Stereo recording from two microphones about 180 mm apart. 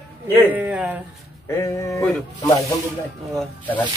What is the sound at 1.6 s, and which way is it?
Speech, 15° left (ahead or behind).